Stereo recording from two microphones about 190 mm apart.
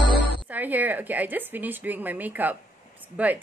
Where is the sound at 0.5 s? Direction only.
10° right (ahead or behind).